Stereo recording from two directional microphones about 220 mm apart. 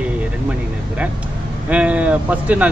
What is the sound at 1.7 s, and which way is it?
Speech, 5° right (ahead or behind).